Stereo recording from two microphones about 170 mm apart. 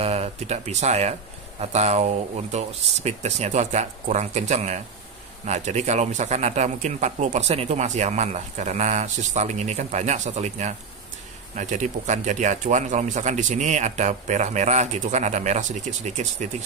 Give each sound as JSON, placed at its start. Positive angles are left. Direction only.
{"t": 0.0, "sound": "speech", "side_deg": -40}